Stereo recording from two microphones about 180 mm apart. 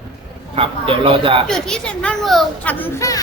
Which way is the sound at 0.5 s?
30° right (ahead or behind).